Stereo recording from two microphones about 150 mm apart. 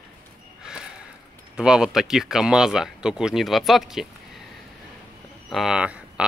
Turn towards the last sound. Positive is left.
turn(degrees=-5)  # may be behind; listen again after turning